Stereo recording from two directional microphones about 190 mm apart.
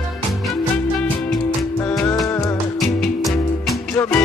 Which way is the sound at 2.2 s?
15° left (ahead or behind).